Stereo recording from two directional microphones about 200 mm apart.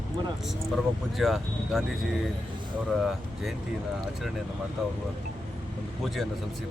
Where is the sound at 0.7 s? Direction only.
Centre (ahead or behind).